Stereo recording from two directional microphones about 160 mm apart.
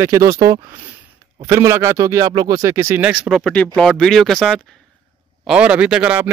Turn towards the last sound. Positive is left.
turn(degrees=-10)  # may be behind; listen again after turning